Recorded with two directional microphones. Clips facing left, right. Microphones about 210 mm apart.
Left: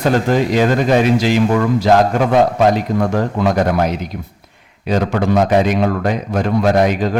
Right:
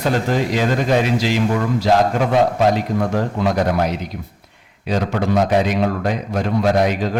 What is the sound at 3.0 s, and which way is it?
A man's voice, 55° left (ahead or behind).